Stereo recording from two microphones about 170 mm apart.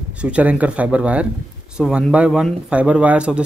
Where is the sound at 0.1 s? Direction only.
5° right (ahead or behind).